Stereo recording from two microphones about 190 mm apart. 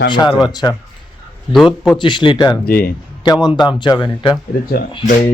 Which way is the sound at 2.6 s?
50° left (ahead or behind).